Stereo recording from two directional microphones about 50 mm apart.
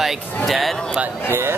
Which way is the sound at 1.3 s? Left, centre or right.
Right.